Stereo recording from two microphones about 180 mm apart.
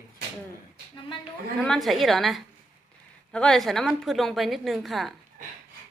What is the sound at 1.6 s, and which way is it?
A woman's voice, centre (ahead or behind).